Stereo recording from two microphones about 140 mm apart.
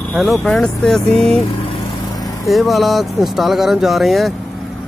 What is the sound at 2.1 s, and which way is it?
Vehicle, 25° left (ahead or behind).